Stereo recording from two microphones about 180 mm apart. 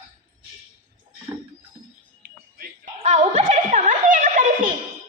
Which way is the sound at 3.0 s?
40° right (ahead or behind).